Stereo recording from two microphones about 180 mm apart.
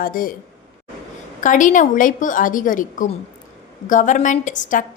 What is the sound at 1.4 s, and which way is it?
A woman's voice, 45° left (ahead or behind).